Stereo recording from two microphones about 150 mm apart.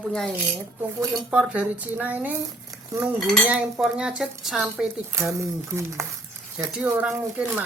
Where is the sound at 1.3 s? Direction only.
5° right (ahead or behind).